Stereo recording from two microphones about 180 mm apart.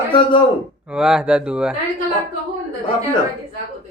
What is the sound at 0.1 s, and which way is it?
Speech, 30° left (ahead or behind).